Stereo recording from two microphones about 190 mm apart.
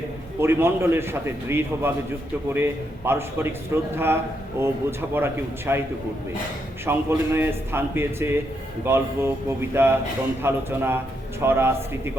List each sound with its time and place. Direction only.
0.3 s a man's voice: 10° right (ahead or behind)
6.8 s a man's voice: 10° right (ahead or behind)